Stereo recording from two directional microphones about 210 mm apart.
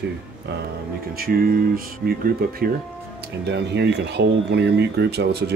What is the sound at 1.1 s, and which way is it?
Speech, 45° right (ahead or behind).